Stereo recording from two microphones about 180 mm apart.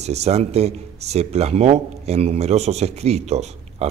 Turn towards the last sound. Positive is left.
turn(degrees=-35)  # may be behind; listen again after turning